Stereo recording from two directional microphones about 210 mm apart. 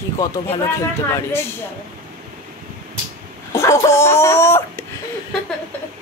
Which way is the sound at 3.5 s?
15° left (ahead or behind).